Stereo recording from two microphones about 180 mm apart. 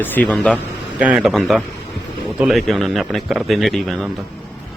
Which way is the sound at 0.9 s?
5° right (ahead or behind).